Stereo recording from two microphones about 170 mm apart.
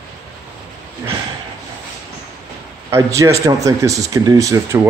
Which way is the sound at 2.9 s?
15° right (ahead or behind).